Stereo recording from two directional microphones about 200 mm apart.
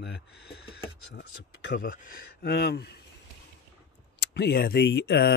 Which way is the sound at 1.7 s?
45° left (ahead or behind).